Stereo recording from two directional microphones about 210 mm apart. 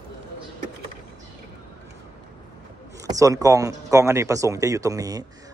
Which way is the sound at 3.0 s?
15° right (ahead or behind).